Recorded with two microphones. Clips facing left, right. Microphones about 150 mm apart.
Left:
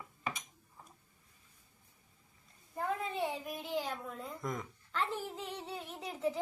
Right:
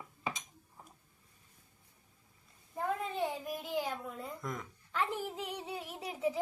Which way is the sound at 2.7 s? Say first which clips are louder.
Right 1 dB; centre (ahead or behind).